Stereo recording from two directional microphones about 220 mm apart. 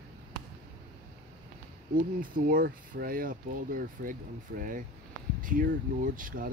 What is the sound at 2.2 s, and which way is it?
Speech, 40° right (ahead or behind).